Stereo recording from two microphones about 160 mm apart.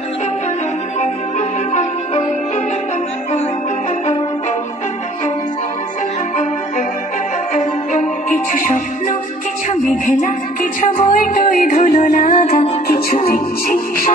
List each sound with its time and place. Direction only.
1.7 s music: 45° left (ahead or behind)
7.5 s music: 50° left (ahead or behind)
13.1 s music: 60° left (ahead or behind)